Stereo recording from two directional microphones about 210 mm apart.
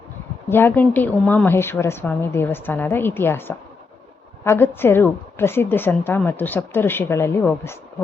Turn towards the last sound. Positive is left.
turn(degrees=10)  # may be behind; listen again after turning